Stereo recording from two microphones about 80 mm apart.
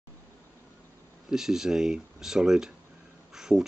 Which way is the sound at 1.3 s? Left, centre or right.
Centre.